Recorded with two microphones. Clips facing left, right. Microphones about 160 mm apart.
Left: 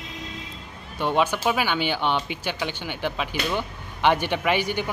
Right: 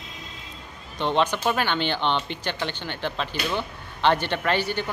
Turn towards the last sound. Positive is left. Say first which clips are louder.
# left 1 dB
turn(degrees=15)  # may be behind; listen again after turning